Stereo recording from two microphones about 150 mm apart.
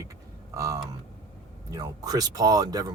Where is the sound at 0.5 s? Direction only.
20° right (ahead or behind).